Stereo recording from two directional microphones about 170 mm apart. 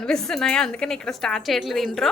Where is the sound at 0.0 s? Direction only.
5° left (ahead or behind).